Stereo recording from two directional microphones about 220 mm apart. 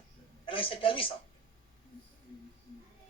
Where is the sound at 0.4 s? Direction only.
25° left (ahead or behind).